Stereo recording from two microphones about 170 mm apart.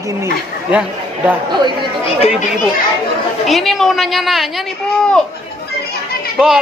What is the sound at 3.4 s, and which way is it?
Speech, centre (ahead or behind).